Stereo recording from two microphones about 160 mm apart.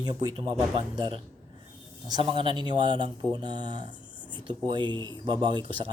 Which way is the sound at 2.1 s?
30° right (ahead or behind).